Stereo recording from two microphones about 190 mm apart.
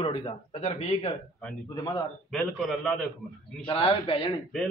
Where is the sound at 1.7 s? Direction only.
20° left (ahead or behind).